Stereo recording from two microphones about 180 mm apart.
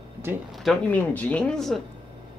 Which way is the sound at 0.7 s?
10° left (ahead or behind).